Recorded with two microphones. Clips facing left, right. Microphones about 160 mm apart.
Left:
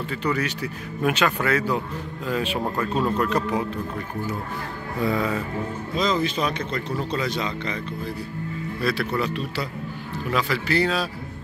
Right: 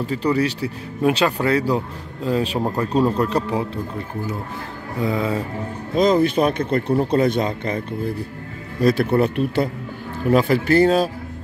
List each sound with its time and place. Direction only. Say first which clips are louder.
0.0 s speech: right 6 dB; 35° right (ahead or behind)
5.0 s music: right 2 dB; 25° right (ahead or behind)
5.9 s speech: right 8 dB; 55° right (ahead or behind)
9.1 s speech: right 8 dB; 55° right (ahead or behind)